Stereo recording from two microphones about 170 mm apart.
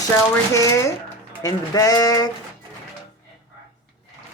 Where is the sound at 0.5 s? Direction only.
20° left (ahead or behind).